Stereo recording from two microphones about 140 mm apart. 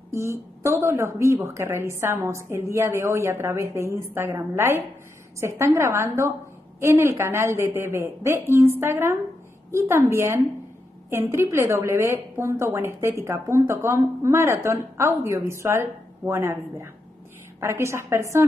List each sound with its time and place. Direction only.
0.1 s a woman's voice: 20° right (ahead or behind)